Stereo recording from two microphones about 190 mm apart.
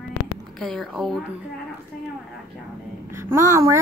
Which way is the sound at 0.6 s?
Centre (ahead or behind).